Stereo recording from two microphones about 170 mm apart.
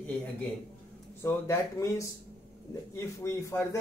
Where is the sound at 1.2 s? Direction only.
15° left (ahead or behind).